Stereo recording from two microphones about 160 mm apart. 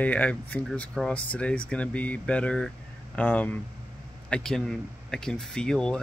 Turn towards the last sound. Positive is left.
turn(degrees=5)  # may be behind; listen again after turning